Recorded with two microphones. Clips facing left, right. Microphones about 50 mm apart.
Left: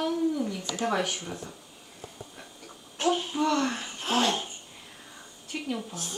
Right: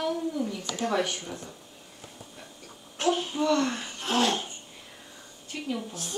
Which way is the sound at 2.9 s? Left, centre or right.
Centre.